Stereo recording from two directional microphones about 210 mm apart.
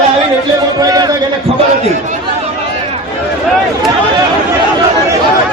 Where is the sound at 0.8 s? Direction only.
15° right (ahead or behind).